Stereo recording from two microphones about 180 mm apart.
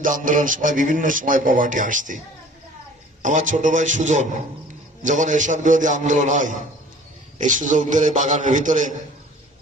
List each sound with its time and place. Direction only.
0.0 s speech: 45° right (ahead or behind)
3.2 s speech: 45° right (ahead or behind)